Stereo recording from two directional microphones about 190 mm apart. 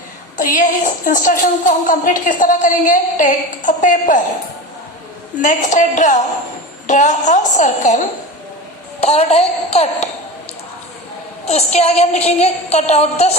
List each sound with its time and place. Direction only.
0.3 s a woman's voice: 45° left (ahead or behind)
5.4 s a woman's voice: 40° left (ahead or behind)
11.4 s a woman's voice: 35° left (ahead or behind)